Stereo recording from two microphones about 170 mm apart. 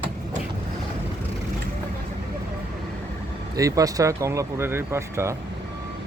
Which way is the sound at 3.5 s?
20° right (ahead or behind).